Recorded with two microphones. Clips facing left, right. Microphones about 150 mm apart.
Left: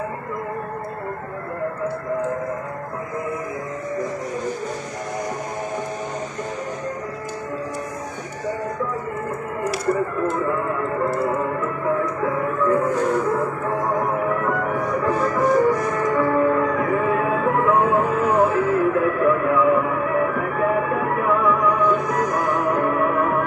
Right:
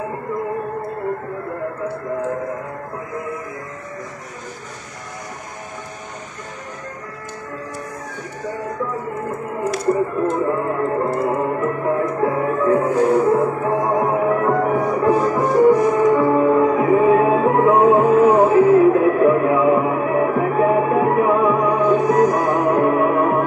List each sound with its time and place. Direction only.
9.9 s speech: 15° right (ahead or behind)
10.5 s music: 35° right (ahead or behind)
11.9 s music: 35° right (ahead or behind)
12.4 s music: 25° right (ahead or behind)
15.0 s music: 20° right (ahead or behind)